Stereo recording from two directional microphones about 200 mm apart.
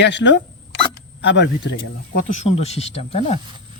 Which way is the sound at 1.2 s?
65° left (ahead or behind).